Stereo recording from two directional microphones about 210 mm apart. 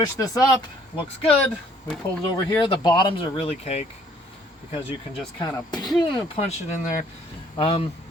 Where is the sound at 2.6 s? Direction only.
20° left (ahead or behind).